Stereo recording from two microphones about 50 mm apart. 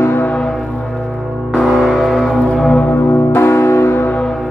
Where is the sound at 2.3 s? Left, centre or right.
Centre.